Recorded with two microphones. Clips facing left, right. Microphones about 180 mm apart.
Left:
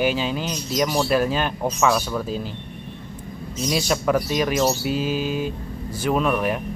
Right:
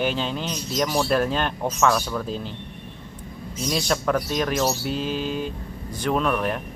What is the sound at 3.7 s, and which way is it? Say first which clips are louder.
Speech: left 2 dB; 5° left (ahead or behind).